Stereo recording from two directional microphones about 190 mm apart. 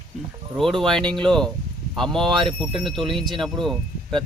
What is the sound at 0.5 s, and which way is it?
Speech, centre (ahead or behind).